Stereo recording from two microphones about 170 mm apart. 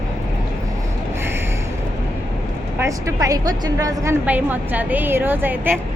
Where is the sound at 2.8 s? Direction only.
20° right (ahead or behind).